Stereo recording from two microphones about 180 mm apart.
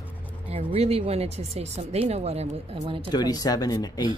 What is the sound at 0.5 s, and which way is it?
Speech, 30° right (ahead or behind).